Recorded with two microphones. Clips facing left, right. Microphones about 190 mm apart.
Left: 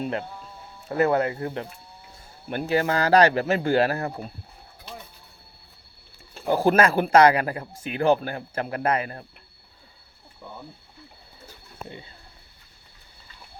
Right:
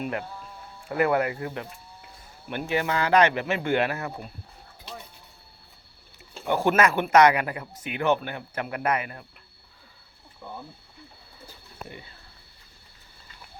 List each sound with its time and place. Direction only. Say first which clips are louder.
0.0 s speech: left 2 dB; 25° left (ahead or behind)
6.5 s speech: left 2 dB; 35° left (ahead or behind)